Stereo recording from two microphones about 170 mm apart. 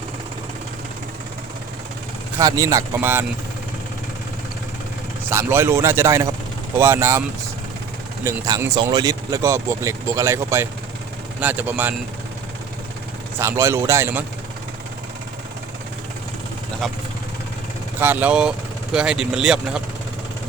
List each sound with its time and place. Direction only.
2.4 s speech: 20° right (ahead or behind)
5.3 s speech: 15° right (ahead or behind)
13.4 s speech: 15° right (ahead or behind)
18.0 s speech: 10° right (ahead or behind)